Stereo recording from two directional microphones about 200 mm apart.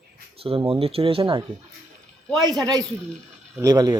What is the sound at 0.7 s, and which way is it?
Speech, 30° right (ahead or behind).